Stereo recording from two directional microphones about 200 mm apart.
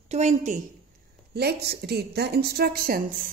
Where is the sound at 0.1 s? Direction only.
35° right (ahead or behind).